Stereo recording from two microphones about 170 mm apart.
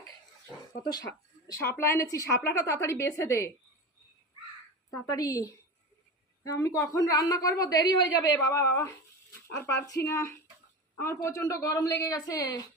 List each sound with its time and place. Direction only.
0.8 s a woman's voice: 25° left (ahead or behind)
4.9 s a woman's voice: 20° left (ahead or behind)